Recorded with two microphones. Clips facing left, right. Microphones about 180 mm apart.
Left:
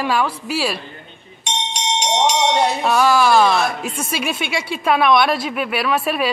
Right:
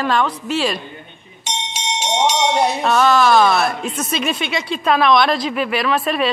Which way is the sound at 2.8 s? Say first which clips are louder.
Right 1 dB; 5° left (ahead or behind).